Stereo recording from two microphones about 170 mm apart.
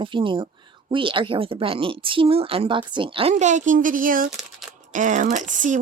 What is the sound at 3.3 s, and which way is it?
Speech, 45° right (ahead or behind).